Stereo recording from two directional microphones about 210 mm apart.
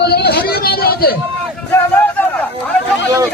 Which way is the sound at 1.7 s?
10° left (ahead or behind).